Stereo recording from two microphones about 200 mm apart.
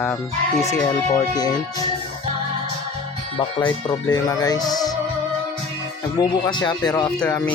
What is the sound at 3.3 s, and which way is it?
Speech, 25° left (ahead or behind).